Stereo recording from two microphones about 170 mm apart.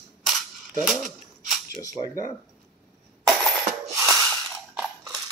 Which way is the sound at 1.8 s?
20° left (ahead or behind).